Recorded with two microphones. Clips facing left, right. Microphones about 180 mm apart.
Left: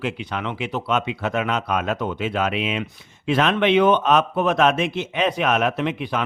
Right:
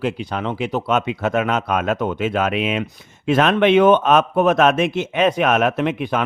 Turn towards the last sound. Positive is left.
turn(degrees=-50)  # may be behind; listen again after turning